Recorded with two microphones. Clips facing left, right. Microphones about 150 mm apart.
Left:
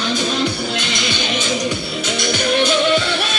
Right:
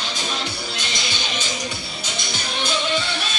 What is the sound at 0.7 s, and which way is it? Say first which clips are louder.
Music: left 7 dB; 65° left (ahead or behind).